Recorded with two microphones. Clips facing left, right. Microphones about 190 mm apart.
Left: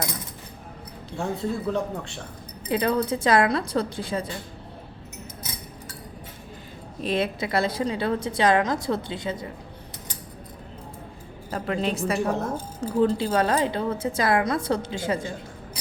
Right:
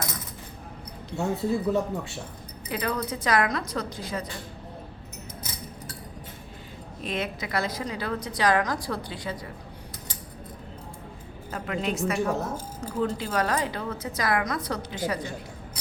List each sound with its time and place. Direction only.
1.1 s speech: 5° right (ahead or behind)
2.6 s a woman's voice: 30° left (ahead or behind)
7.0 s a woman's voice: 30° left (ahead or behind)
11.5 s a woman's voice: 30° left (ahead or behind)